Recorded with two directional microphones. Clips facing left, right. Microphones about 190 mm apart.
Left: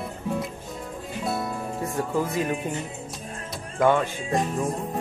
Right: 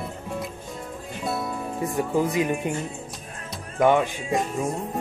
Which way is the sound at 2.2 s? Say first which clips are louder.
Right 3 dB; 15° right (ahead or behind).